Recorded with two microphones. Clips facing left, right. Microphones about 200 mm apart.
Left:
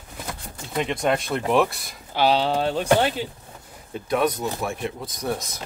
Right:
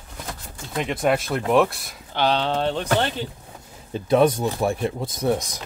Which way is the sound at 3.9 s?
30° right (ahead or behind).